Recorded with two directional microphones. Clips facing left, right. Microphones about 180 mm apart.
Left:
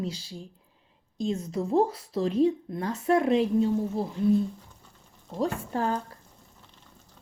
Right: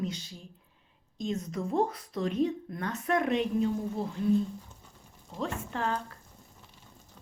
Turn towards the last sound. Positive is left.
turn(degrees=35)  # may be behind; listen again after turning